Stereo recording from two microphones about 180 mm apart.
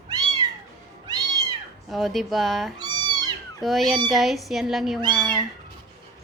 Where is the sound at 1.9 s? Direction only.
Centre (ahead or behind).